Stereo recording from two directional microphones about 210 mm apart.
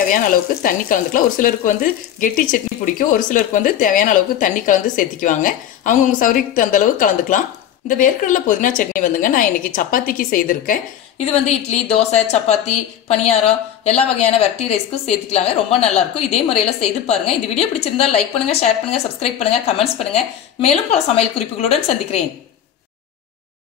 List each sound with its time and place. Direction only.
0.1 s speech: 40° left (ahead or behind)
11.4 s a woman's voice: 30° left (ahead or behind)